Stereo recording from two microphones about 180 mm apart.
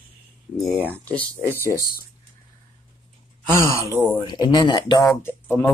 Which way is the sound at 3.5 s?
15° right (ahead or behind).